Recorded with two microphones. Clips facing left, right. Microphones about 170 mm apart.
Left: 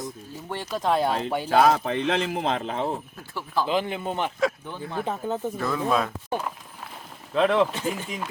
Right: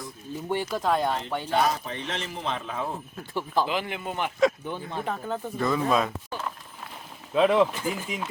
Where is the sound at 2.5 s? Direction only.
25° left (ahead or behind).